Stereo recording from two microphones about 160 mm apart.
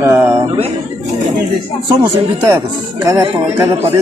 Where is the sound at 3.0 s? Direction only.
20° right (ahead or behind).